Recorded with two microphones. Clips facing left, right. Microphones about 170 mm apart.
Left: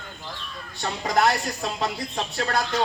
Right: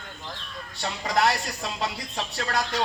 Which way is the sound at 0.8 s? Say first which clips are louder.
Left 2 dB; 50° left (ahead or behind).